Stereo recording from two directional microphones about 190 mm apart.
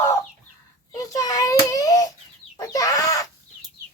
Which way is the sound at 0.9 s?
20° left (ahead or behind).